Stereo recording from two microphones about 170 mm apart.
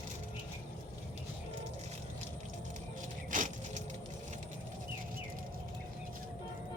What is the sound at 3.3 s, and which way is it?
Vehicle, 50° right (ahead or behind).